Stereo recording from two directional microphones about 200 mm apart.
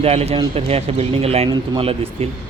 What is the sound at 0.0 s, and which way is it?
A man's voice, 30° right (ahead or behind).